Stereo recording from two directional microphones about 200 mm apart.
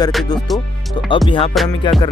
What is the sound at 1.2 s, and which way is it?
Music, 25° left (ahead or behind).